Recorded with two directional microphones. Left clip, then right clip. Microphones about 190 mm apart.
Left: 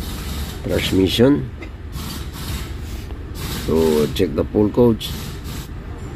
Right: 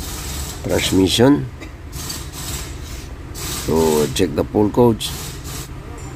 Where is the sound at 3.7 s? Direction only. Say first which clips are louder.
Even; 45° right (ahead or behind).